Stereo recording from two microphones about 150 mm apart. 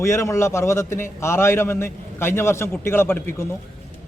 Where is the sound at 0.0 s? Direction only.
20° left (ahead or behind).